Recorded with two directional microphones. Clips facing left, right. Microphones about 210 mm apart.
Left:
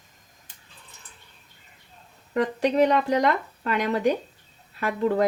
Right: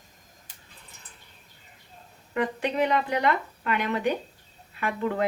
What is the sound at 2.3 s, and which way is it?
Speech, 40° left (ahead or behind).